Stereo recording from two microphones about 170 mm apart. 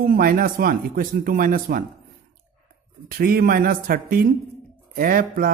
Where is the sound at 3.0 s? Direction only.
60° right (ahead or behind).